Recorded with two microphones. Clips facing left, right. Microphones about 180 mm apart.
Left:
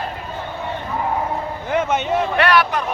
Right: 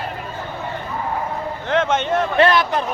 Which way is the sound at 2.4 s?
25° right (ahead or behind).